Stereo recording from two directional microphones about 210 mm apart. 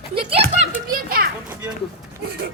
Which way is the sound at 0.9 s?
45° right (ahead or behind).